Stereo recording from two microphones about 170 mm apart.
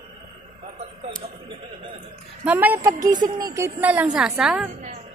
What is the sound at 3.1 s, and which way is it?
A woman's voice, 25° right (ahead or behind).